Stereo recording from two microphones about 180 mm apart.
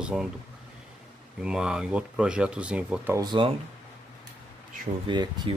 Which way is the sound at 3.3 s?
30° right (ahead or behind).